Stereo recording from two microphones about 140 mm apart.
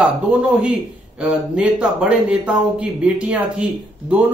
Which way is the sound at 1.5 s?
5° right (ahead or behind).